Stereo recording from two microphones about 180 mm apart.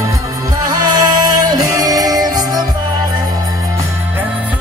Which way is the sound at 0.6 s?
25° right (ahead or behind).